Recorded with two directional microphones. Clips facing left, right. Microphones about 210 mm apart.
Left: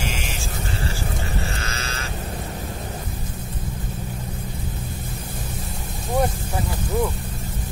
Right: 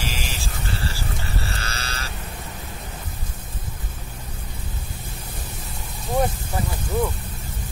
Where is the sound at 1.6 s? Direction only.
35° right (ahead or behind).